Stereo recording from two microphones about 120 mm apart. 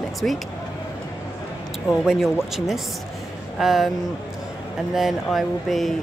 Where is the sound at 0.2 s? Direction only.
5° left (ahead or behind).